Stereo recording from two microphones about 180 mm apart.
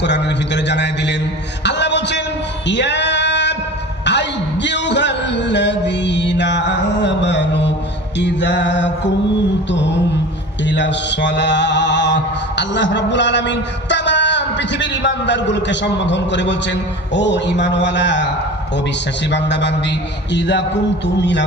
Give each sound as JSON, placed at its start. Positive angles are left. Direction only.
{"t": 0.0, "sound": "a sound", "side_deg": 75}
{"t": 2.6, "sound": "male singing", "side_deg": 80}
{"t": 4.0, "sound": "a sound", "side_deg": 75}
{"t": 8.2, "sound": "a man's voice", "side_deg": 80}
{"t": 10.7, "sound": "mantra", "side_deg": 80}
{"t": 17.2, "sound": "a man's voice", "side_deg": 80}
{"t": 19.3, "sound": "a man's voice", "side_deg": 80}